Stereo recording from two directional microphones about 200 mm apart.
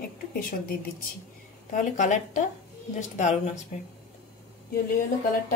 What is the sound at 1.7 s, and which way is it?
Speech, 40° left (ahead or behind).